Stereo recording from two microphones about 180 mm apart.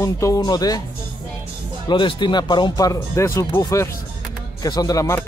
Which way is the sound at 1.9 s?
25° left (ahead or behind).